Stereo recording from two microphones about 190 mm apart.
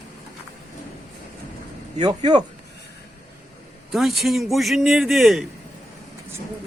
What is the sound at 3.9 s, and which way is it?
A man's voice, centre (ahead or behind).